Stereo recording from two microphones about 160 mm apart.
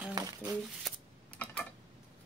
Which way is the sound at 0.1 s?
25° right (ahead or behind).